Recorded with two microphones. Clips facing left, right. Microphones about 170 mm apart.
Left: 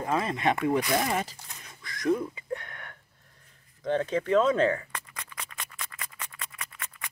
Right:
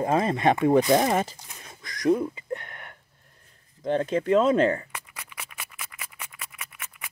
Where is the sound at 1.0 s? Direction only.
45° right (ahead or behind).